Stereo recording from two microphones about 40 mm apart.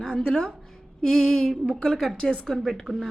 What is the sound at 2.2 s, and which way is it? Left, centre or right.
Female singing, centre.